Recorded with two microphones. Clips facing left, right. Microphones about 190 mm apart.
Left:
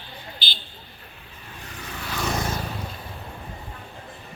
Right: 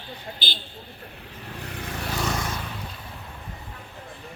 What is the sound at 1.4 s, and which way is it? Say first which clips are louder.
Vehicle: right 4 dB; 70° right (ahead or behind).